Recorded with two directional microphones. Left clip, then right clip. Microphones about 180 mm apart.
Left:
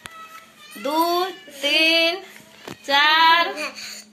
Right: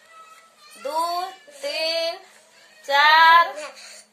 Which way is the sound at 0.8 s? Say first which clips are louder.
Left 4 dB; 10° left (ahead or behind).